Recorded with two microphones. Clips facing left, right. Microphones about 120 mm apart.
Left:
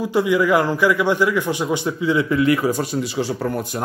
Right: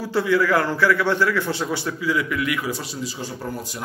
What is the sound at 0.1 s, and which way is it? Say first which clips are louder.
A man's voice: left 2 dB; 15° left (ahead or behind).